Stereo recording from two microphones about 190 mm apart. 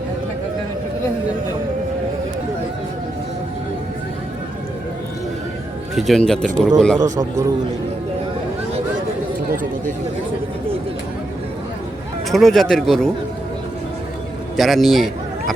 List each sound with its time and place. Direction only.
5.9 s a man's voice: centre (ahead or behind)
7.2 s a man's voice: 15° right (ahead or behind)
12.3 s a man's voice: centre (ahead or behind)
14.5 s a man's voice: centre (ahead or behind)